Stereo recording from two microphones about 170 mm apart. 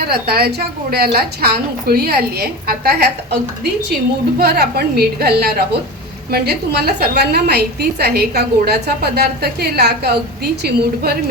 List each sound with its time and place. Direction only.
0.1 s a woman's voice: 65° right (ahead or behind)
4.4 s a woman's voice: 70° right (ahead or behind)